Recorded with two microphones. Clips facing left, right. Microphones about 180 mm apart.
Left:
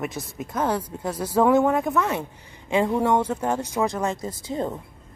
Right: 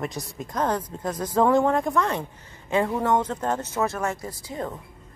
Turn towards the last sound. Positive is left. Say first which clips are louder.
# left 4 dB
turn(degrees=25)  # may be behind; listen again after turning